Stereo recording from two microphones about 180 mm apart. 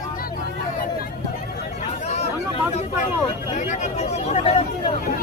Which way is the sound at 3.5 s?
40° left (ahead or behind).